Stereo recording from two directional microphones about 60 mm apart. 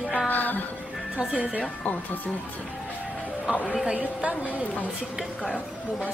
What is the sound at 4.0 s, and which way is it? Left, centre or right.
Speech, right.